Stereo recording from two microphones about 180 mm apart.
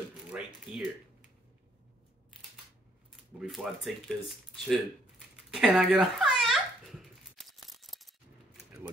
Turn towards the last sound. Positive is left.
turn(degrees=0)  # may be behind; listen again after turning